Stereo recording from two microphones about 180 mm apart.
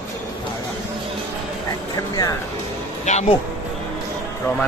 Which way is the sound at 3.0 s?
40° left (ahead or behind).